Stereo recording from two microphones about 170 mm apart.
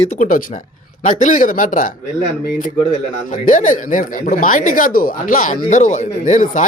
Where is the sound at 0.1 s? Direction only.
50° left (ahead or behind).